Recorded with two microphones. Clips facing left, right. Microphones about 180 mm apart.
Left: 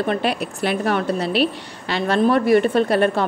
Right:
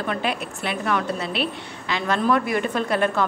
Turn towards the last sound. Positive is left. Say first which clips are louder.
# left 5 dB
turn(degrees=30)  # may be behind; listen again after turning